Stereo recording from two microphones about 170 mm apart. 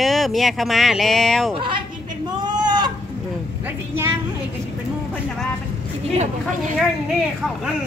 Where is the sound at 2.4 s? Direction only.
25° right (ahead or behind).